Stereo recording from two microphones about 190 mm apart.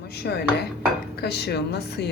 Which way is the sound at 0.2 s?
60° left (ahead or behind).